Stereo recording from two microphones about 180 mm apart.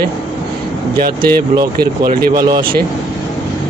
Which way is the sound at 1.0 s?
55° right (ahead or behind).